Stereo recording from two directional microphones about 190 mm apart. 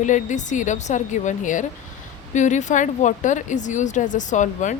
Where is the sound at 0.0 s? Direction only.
40° left (ahead or behind).